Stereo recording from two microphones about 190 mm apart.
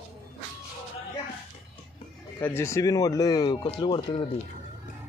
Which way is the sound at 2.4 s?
15° left (ahead or behind).